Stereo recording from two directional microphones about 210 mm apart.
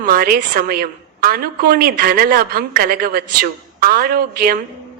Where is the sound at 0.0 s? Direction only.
45° right (ahead or behind).